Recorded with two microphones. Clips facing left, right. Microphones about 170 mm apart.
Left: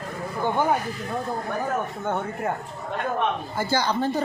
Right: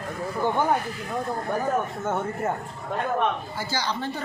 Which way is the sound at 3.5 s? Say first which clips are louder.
Left 5 dB; 50° left (ahead or behind).